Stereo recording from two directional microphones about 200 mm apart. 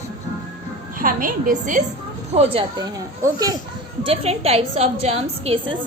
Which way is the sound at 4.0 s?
30° right (ahead or behind).